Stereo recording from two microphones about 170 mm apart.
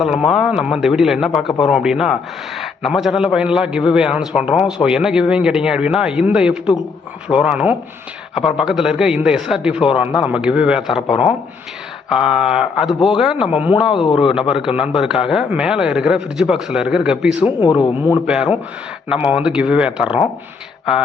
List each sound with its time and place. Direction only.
0.0 s a man's voice: 5° right (ahead or behind)
13.9 s speech: 30° left (ahead or behind)
14.2 s a man's voice: 5° right (ahead or behind)
17.4 s speech: 25° left (ahead or behind)
19.0 s speech: 5° right (ahead or behind)